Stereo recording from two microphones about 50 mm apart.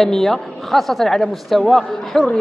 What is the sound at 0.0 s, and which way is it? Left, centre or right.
A woman's voice, centre.